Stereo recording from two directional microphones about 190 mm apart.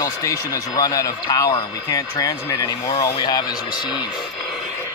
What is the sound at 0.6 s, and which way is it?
A man's voice, 20° left (ahead or behind).